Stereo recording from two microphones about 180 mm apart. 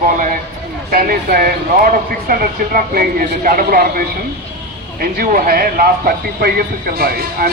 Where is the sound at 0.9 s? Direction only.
55° right (ahead or behind).